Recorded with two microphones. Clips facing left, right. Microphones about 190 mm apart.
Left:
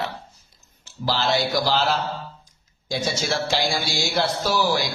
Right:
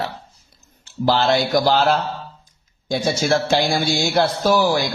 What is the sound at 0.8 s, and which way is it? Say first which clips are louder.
Speech: right 6 dB; 55° right (ahead or behind).